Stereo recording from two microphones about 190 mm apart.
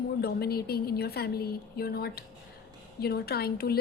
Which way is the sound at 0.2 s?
55° left (ahead or behind).